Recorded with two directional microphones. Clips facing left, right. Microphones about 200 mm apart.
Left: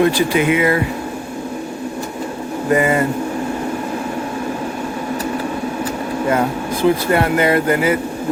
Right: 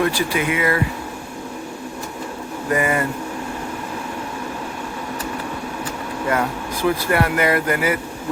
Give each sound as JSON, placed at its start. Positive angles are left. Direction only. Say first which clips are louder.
{"t": 0.0, "sound": "speech", "louder": "left 6 dB", "side_deg": 20}
{"t": 2.6, "sound": "speech", "louder": "left 5 dB", "side_deg": 25}
{"t": 6.2, "sound": "speech", "louder": "left 4 dB", "side_deg": 25}